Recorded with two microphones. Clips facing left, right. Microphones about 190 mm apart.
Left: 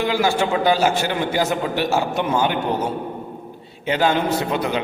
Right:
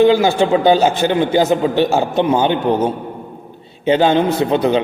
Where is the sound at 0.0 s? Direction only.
20° right (ahead or behind).